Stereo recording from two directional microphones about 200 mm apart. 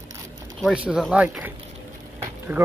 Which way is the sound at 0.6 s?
Centre (ahead or behind).